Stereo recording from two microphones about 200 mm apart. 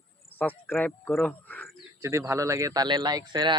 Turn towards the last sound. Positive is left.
turn(degrees=-25)  # may be behind; listen again after turning